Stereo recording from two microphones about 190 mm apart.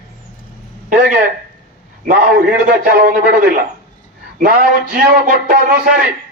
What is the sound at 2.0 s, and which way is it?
Speech, 50° right (ahead or behind).